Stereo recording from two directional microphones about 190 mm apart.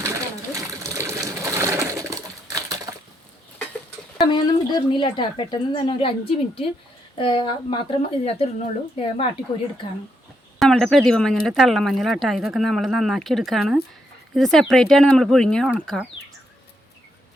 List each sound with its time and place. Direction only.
0.0 s pigeon: 15° right (ahead or behind)
4.2 s speech: 25° left (ahead or behind)
10.6 s speech: 5° left (ahead or behind)